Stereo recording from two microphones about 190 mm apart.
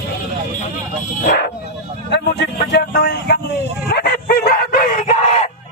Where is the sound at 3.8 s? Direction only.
55° left (ahead or behind).